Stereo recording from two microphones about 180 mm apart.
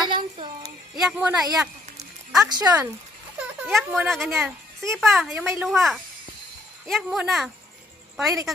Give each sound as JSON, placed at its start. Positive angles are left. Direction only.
{"t": 0.1, "sound": "a sound", "side_deg": -25}
{"t": 0.9, "sound": "speech", "side_deg": 0}
{"t": 2.4, "sound": "speech", "side_deg": -25}
{"t": 3.6, "sound": "a woman's voice", "side_deg": 0}